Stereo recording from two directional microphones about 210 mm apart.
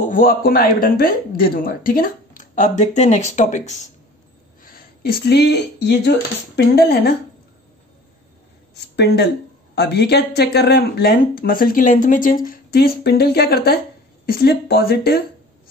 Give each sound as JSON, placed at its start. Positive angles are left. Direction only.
{"t": 0.0, "sound": "speech", "side_deg": 40}
{"t": 4.6, "sound": "speech", "side_deg": 45}
{"t": 8.7, "sound": "speech", "side_deg": 55}